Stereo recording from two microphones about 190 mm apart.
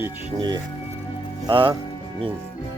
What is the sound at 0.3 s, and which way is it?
Speech, 25° right (ahead or behind).